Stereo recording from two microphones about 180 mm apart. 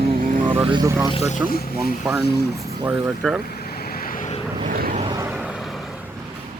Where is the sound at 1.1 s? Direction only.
40° left (ahead or behind).